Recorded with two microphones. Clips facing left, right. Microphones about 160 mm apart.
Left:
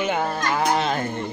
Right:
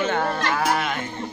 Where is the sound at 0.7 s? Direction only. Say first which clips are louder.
Left 2 dB; 30° left (ahead or behind).